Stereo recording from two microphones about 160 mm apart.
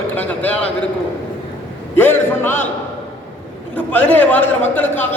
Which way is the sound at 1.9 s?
10° left (ahead or behind).